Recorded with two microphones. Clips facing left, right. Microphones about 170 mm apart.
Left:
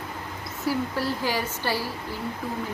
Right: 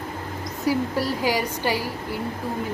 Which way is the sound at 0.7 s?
15° right (ahead or behind).